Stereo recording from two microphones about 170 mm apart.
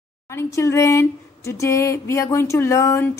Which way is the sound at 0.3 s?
15° left (ahead or behind).